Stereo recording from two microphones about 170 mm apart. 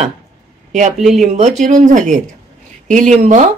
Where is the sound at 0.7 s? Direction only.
45° right (ahead or behind).